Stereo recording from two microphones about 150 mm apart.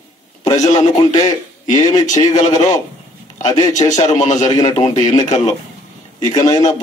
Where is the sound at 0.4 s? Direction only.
55° left (ahead or behind).